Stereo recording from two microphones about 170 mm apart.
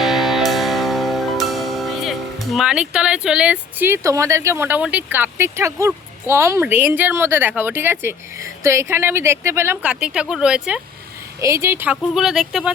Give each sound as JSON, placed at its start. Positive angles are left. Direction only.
{"t": 0.0, "sound": "music", "side_deg": 0}
{"t": 11.3, "sound": "speech", "side_deg": -15}
{"t": 12.1, "sound": "speech", "side_deg": 0}